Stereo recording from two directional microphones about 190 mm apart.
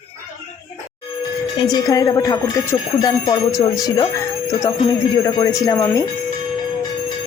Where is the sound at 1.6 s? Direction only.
20° left (ahead or behind).